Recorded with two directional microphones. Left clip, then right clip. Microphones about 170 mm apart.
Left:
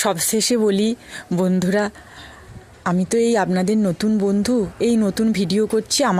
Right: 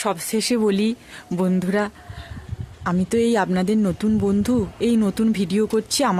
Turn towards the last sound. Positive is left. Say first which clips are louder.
# left 2 dB
turn(degrees=20)  # may be behind; listen again after turning